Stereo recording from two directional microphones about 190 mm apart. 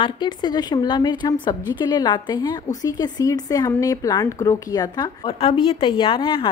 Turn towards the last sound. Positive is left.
turn(degrees=25)  # may be behind; listen again after turning